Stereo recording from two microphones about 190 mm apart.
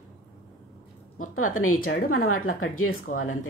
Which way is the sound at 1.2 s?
90° left.